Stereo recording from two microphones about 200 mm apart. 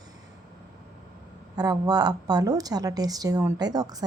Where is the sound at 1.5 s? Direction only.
20° right (ahead or behind).